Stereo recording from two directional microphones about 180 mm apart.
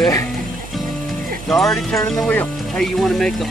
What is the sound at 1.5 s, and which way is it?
Speech, 5° left (ahead or behind).